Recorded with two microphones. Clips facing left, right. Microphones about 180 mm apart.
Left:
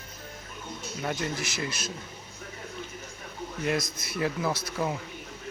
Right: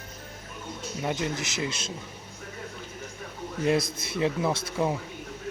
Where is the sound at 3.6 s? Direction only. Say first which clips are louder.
Right 5 dB; 30° right (ahead or behind).